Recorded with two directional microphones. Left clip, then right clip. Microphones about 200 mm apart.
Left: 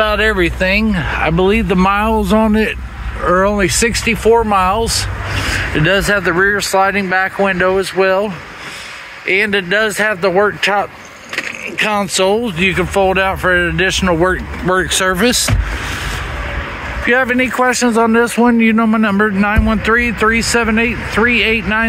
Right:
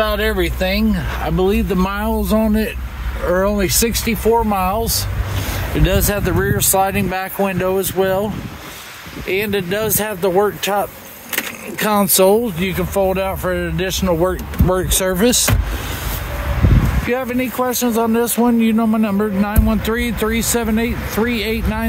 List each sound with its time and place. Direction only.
0.0 s speech: 10° left (ahead or behind); by 8.3 s 20° right (ahead or behind)
9.3 s speech: 15° right (ahead or behind)
11.8 s speech: 40° right (ahead or behind)
12.4 s speech: centre (ahead or behind)
14.7 s speech: 15° right (ahead or behind)
17.1 s speech: centre (ahead or behind)